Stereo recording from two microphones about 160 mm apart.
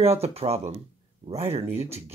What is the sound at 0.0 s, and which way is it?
Speech, 40° right (ahead or behind).